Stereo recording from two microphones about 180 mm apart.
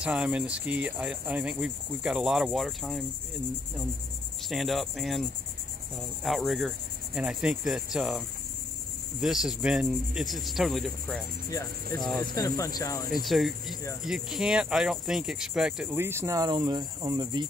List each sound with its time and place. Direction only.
0.0 s speech: 5° right (ahead or behind)
4.5 s speech: centre (ahead or behind)
9.2 s speech: centre (ahead or behind)
12.4 s speech: 20° left (ahead or behind)
13.1 s speech: centre (ahead or behind); by 17.5 s 25° right (ahead or behind)